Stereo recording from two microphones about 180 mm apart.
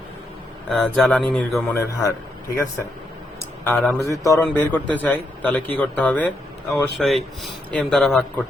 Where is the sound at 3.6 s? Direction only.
10° left (ahead or behind).